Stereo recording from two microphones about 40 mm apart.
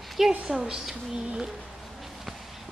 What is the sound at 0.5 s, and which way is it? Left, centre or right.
A woman's voice, centre.